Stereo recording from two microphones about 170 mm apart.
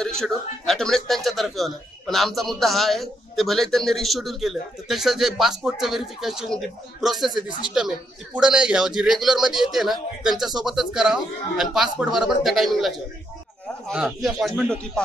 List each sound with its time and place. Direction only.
0.0 s speech: 5° left (ahead or behind)